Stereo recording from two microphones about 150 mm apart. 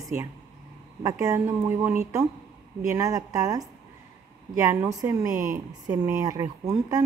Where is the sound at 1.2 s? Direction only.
20° right (ahead or behind).